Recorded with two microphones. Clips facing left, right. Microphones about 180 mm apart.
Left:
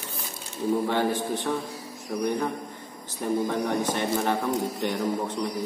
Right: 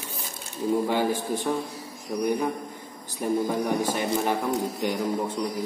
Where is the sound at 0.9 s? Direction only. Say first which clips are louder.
Even; 10° right (ahead or behind).